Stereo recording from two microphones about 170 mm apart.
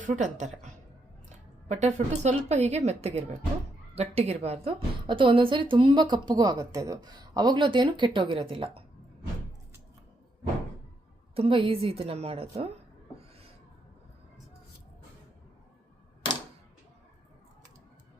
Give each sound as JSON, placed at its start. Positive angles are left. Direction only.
{"t": 0.0, "sound": "a woman's voice", "side_deg": -45}
{"t": 11.3, "sound": "speech", "side_deg": -30}